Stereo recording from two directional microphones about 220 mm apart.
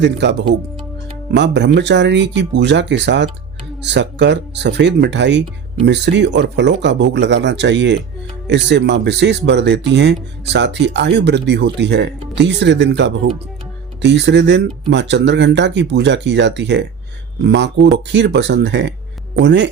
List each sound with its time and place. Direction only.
0.0 s speech: 50° right (ahead or behind)